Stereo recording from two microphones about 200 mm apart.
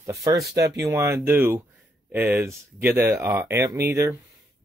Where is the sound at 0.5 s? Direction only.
55° right (ahead or behind).